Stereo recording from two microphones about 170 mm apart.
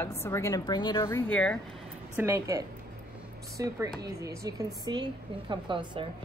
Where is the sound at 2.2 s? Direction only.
15° right (ahead or behind).